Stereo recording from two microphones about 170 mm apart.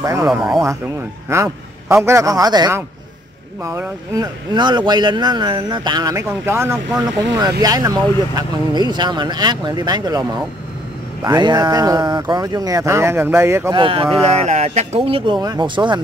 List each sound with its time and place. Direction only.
0.0 s speech: 20° right (ahead or behind)
1.3 s a man's voice: 15° right (ahead or behind)
13.7 s speech: 30° right (ahead or behind)